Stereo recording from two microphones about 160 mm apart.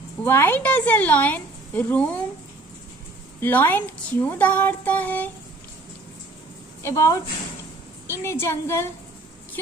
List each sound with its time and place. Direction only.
0.2 s a woman's voice: 10° left (ahead or behind)
3.3 s a woman's voice: 15° left (ahead or behind)
6.8 s a woman's voice: 20° left (ahead or behind)
8.2 s a woman's voice: 15° left (ahead or behind)